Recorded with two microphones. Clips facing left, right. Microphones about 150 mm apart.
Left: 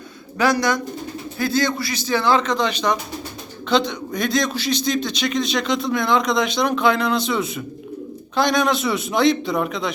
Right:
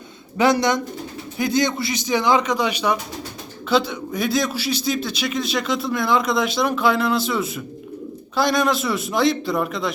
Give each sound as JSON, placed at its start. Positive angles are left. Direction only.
{"t": 0.3, "sound": "a man's voice", "side_deg": -20}